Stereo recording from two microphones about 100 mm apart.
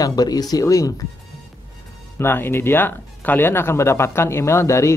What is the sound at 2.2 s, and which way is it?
Speech, 20° left (ahead or behind).